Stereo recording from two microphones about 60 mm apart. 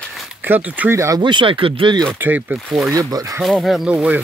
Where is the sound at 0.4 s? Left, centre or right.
Right.